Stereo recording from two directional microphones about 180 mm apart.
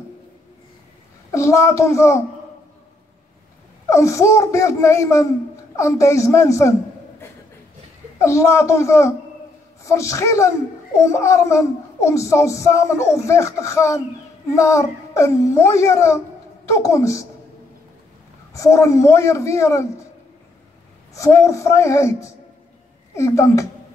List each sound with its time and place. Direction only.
1.3 s a child's voice: 15° left (ahead or behind)
3.9 s a child's voice: 15° left (ahead or behind)
8.2 s a child's voice: 15° left (ahead or behind)
18.5 s a child's voice: 15° left (ahead or behind)
21.1 s a child's voice: 15° left (ahead or behind)
23.1 s a child's voice: 15° left (ahead or behind)